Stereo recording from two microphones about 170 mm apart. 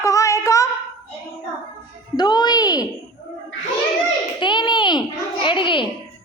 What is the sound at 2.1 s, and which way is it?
Music, 25° left (ahead or behind).